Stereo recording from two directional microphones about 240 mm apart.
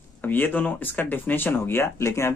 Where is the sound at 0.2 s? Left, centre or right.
Centre.